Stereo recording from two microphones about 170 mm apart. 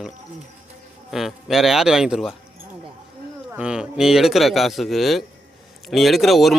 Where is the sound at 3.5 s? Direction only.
5° right (ahead or behind).